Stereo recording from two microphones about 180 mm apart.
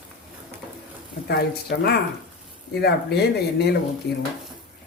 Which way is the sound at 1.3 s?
65° left (ahead or behind).